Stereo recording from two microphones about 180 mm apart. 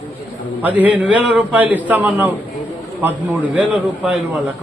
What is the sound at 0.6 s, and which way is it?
A man's voice, 10° right (ahead or behind).